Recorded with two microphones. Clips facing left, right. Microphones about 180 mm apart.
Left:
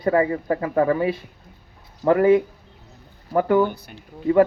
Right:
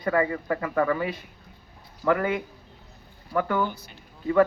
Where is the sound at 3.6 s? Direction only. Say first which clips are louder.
Left 7 dB; 55° left (ahead or behind).